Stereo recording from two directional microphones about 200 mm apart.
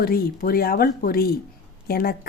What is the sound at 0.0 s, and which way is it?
A woman's voice, 50° left (ahead or behind).